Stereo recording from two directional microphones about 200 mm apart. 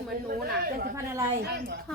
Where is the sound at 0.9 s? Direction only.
15° right (ahead or behind).